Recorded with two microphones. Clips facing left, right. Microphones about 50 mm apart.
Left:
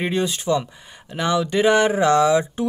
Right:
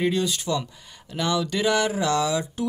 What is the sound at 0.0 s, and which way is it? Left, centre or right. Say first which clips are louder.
Speech: left 1 dB; left.